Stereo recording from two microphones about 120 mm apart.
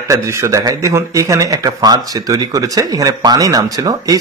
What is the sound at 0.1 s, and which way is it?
Speech, 25° right (ahead or behind).